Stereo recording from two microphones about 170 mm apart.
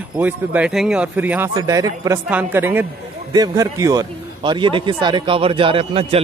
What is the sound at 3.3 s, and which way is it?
A man's voice, 20° right (ahead or behind).